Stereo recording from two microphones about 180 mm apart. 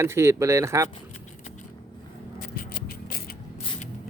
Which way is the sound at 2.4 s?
55° left (ahead or behind).